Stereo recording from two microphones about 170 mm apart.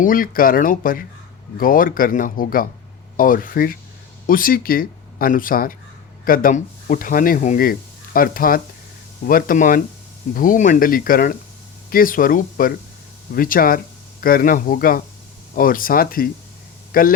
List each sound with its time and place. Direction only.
0.0 s a man's voice: 55° left (ahead or behind)